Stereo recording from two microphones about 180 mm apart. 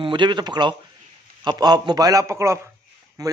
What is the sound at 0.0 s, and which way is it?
A man's voice, 25° right (ahead or behind).